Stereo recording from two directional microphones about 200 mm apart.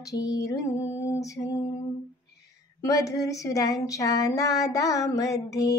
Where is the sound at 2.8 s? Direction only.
15° left (ahead or behind).